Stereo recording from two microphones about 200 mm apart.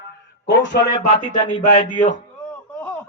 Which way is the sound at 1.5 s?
25° left (ahead or behind).